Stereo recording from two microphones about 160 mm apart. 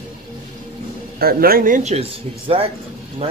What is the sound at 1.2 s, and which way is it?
Speech, 70° right (ahead or behind).